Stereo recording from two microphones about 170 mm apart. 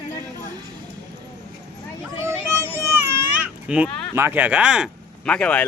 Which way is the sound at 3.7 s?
5° right (ahead or behind).